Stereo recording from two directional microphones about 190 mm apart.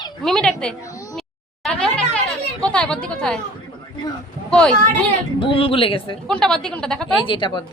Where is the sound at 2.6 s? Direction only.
5° left (ahead or behind).